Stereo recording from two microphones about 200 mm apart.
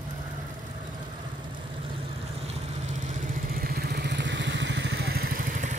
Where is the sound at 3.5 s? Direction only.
50° right (ahead or behind).